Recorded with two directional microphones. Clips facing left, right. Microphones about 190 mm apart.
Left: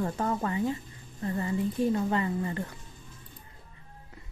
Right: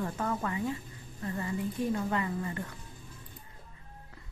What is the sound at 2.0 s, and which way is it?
Speech, 30° left (ahead or behind).